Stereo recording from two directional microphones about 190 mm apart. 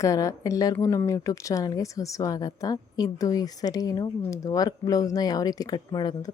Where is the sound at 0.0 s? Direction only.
15° left (ahead or behind).